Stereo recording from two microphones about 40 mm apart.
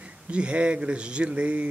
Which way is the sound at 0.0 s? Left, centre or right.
Right.